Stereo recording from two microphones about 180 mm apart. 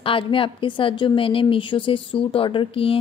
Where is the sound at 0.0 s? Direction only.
30° left (ahead or behind).